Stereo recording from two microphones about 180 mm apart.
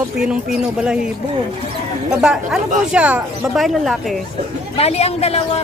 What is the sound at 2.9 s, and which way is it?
Speech, 5° right (ahead or behind).